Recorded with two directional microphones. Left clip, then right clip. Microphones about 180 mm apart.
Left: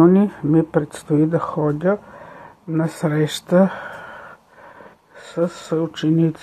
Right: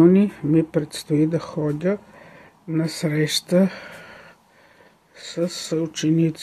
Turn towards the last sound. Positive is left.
turn(degrees=-10)  # may be behind; listen again after turning